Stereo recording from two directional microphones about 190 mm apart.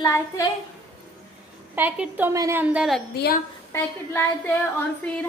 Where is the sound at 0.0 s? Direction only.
15° left (ahead or behind).